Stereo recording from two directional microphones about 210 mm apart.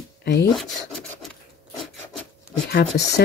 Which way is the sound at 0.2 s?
50° left (ahead or behind).